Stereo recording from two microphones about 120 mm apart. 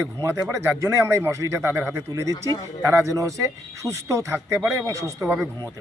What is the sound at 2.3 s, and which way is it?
Speech, 30° left (ahead or behind).